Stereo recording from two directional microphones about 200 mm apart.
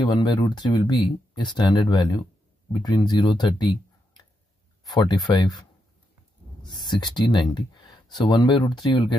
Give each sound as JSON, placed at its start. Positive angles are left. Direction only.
{"t": 0.0, "sound": "speech", "side_deg": 20}
{"t": 4.8, "sound": "speech", "side_deg": 20}
{"t": 6.7, "sound": "speech", "side_deg": 20}